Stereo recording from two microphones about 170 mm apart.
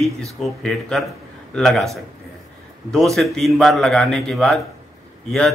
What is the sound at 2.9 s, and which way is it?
Speech, centre (ahead or behind).